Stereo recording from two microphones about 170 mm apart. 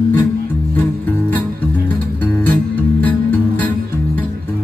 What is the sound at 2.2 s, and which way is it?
Music, 10° left (ahead or behind).